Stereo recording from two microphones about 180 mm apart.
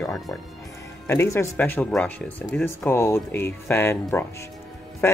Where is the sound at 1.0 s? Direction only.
15° left (ahead or behind).